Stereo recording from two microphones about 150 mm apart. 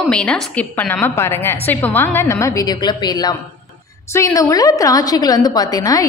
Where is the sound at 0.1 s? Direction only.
5° left (ahead or behind).